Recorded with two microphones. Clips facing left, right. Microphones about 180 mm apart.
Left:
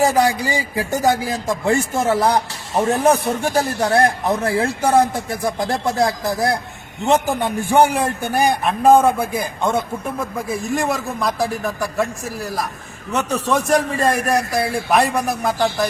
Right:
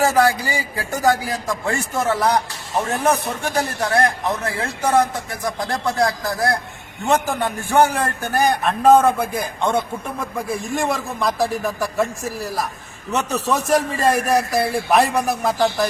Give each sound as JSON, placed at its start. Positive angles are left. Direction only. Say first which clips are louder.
{"t": 0.0, "sound": "a man's voice", "louder": "left 1 dB", "side_deg": 15}